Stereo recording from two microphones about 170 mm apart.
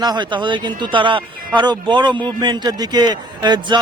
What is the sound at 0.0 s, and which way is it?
A man's voice, 25° right (ahead or behind).